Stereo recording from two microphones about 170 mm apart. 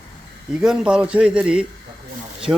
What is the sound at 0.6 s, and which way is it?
A man's voice, 5° right (ahead or behind).